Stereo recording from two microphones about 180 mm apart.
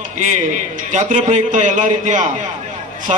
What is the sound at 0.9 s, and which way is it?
A man's voice, 40° right (ahead or behind).